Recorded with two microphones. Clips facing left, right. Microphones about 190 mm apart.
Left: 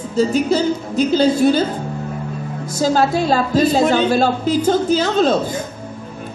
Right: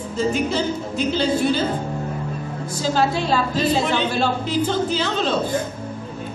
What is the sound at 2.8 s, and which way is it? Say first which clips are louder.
A woman's voice: left 5 dB; 40° left (ahead or behind).